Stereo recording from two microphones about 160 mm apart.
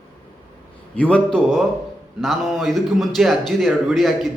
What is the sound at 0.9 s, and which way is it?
Speech, 10° left (ahead or behind).